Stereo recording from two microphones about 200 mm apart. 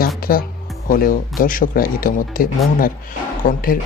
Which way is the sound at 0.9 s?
45° left (ahead or behind).